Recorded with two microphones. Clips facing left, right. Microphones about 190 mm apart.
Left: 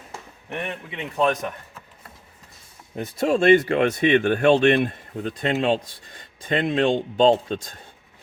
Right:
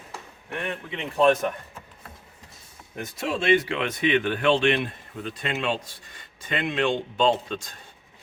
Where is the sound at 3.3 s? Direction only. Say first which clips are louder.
Left 6 dB; 50° left (ahead or behind).